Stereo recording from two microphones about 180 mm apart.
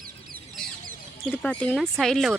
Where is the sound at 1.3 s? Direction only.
5° left (ahead or behind).